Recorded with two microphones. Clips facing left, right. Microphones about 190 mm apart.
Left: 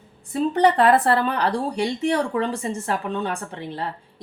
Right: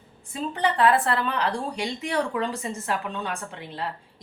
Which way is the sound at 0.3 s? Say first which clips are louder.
Left 7 dB; 45° left (ahead or behind).